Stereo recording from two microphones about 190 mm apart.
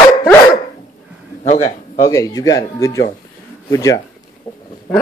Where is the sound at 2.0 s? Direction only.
20° left (ahead or behind).